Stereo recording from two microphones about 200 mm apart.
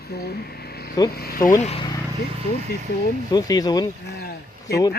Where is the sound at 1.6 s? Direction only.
30° left (ahead or behind).